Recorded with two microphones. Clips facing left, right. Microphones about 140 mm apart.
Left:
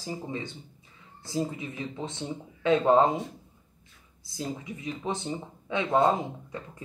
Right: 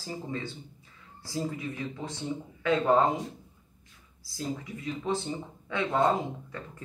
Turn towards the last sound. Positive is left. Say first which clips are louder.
# left 2 dB
turn(degrees=20)  # may be behind; listen again after turning